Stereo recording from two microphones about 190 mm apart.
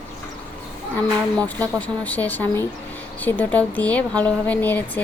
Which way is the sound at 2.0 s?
10° left (ahead or behind).